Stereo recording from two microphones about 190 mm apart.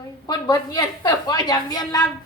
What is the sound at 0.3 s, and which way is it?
A woman's voice, 20° left (ahead or behind).